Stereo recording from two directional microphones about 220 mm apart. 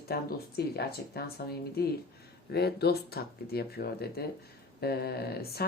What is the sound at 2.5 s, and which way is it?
Speech, 45° left (ahead or behind).